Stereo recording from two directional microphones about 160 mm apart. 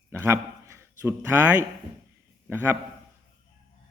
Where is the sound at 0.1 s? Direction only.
15° right (ahead or behind).